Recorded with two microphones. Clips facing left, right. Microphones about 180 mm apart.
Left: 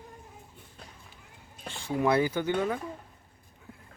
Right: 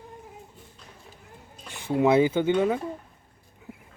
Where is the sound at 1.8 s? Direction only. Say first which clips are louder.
Right 5 dB; 20° right (ahead or behind).